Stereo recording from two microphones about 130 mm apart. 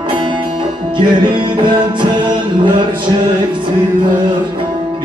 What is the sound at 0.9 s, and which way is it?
Music, 35° right (ahead or behind).